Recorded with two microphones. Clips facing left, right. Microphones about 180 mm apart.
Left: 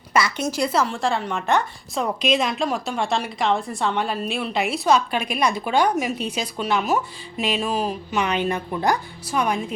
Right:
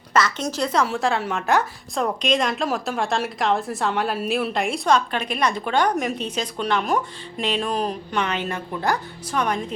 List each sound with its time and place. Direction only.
0.1 s a woman's voice: 10° left (ahead or behind)